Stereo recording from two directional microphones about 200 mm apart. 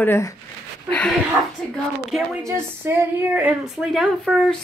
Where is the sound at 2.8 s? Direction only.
10° right (ahead or behind).